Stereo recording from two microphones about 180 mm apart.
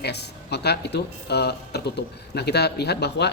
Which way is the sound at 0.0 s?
65° left (ahead or behind).